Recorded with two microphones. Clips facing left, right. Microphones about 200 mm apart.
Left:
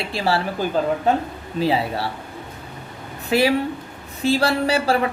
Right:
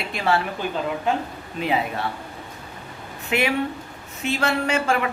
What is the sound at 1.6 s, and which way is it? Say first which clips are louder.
Speech: left 3 dB; 30° left (ahead or behind).